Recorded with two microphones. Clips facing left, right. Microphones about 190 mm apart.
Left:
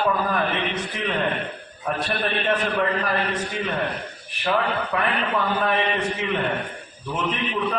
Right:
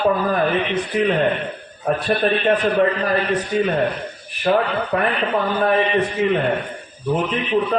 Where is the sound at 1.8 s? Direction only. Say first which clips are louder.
Right 7 dB; 45° right (ahead or behind).